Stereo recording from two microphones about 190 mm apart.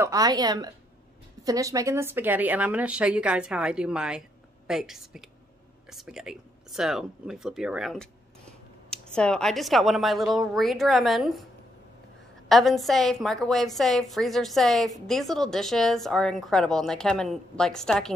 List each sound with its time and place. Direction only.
0.0 s a woman's voice: 20° right (ahead or behind); by 11.4 s centre (ahead or behind)
12.4 s speech: centre (ahead or behind)